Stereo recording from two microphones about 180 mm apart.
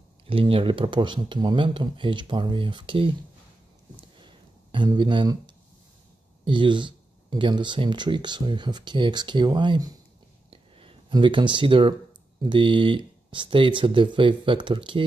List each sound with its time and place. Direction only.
0.3 s speech: 30° right (ahead or behind)
4.7 s speech: 25° right (ahead or behind)
10.5 s a sound: 30° right (ahead or behind)
12.4 s speech: 25° right (ahead or behind)